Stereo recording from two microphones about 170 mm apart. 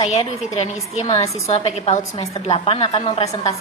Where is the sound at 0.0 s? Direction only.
35° left (ahead or behind).